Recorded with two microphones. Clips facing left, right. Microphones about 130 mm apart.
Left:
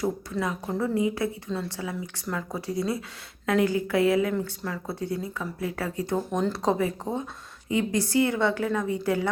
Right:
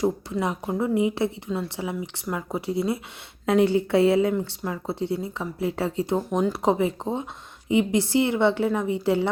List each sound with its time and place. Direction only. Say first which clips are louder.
0.0 s speech: right 3 dB; 25° right (ahead or behind)